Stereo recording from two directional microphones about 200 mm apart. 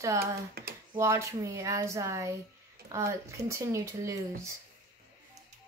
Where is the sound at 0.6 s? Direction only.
50° right (ahead or behind).